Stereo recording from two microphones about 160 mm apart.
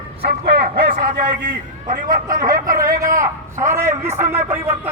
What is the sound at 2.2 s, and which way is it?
A man's voice, 20° right (ahead or behind).